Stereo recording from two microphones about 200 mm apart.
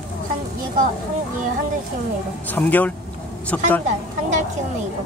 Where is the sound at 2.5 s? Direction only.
10° left (ahead or behind).